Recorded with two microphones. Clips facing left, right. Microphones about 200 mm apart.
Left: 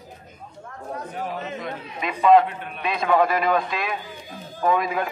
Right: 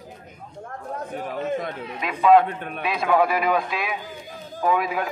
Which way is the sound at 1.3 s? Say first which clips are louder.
Right 5 dB; 50° right (ahead or behind).